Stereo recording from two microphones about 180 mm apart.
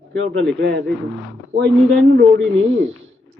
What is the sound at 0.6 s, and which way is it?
Speech, 65° right (ahead or behind).